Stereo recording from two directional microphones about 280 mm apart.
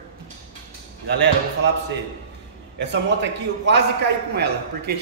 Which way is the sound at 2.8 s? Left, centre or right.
Right.